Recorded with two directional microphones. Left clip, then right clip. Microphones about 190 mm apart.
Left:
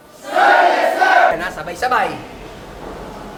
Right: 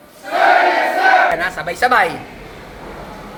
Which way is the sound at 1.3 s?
15° right (ahead or behind).